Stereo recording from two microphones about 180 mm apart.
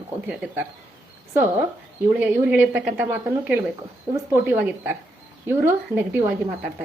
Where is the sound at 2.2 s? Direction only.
10° right (ahead or behind).